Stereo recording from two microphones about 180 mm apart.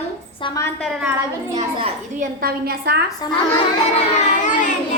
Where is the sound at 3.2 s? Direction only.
20° left (ahead or behind).